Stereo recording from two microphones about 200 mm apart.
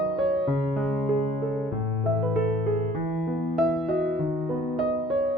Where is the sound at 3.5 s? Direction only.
Centre (ahead or behind).